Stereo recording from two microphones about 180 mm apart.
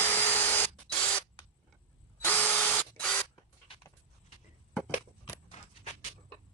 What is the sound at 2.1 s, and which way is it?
Drill, 10° left (ahead or behind).